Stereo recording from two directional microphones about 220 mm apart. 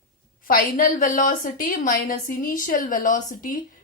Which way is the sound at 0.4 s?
40° left (ahead or behind).